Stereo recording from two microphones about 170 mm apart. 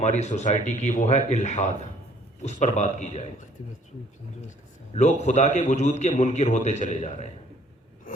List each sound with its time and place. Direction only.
0.0 s a man's voice: 45° left (ahead or behind)
4.9 s a man's voice: 45° left (ahead or behind)